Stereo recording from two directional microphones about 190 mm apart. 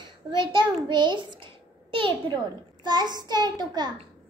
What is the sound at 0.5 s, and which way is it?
A child's voice, 25° right (ahead or behind).